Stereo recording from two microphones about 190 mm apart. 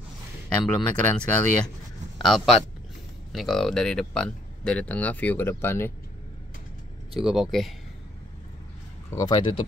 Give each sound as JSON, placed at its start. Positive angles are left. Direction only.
{"t": 0.6, "sound": "speech", "side_deg": 5}
{"t": 7.2, "sound": "speech", "side_deg": 0}
{"t": 9.1, "sound": "speech", "side_deg": 25}